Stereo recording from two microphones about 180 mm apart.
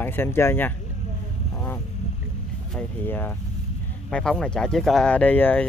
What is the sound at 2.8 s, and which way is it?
Speech, 10° left (ahead or behind).